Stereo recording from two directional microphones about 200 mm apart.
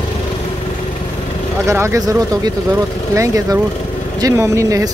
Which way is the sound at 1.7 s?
15° right (ahead or behind).